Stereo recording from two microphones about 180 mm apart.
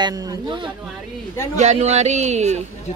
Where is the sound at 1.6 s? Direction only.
40° right (ahead or behind).